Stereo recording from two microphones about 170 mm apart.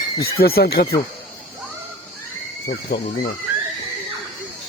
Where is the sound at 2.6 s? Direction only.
70° left (ahead or behind).